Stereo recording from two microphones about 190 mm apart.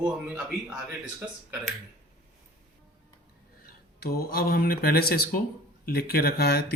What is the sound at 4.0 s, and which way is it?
Speech, 55° left (ahead or behind).